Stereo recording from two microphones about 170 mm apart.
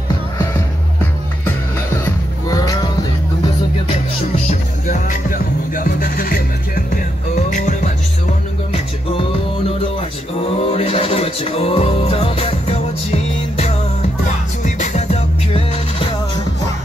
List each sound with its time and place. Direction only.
2.0 s music: 20° left (ahead or behind)
4.5 s music: 50° left (ahead or behind)
10.6 s music: 35° left (ahead or behind)